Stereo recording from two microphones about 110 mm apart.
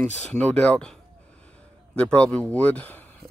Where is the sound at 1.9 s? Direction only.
10° left (ahead or behind).